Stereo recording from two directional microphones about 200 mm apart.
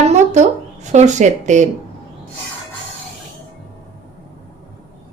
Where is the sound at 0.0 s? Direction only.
35° right (ahead or behind).